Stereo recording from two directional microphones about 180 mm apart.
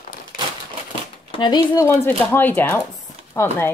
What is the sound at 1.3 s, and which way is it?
Speech, 25° left (ahead or behind).